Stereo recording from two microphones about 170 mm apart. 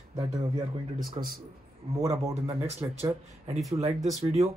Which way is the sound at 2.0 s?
15° right (ahead or behind).